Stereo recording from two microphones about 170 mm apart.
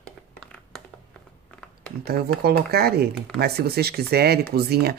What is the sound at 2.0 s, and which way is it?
Speech, 70° right (ahead or behind).